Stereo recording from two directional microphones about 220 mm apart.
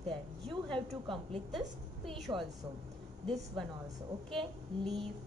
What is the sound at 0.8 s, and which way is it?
Speech, 25° right (ahead or behind).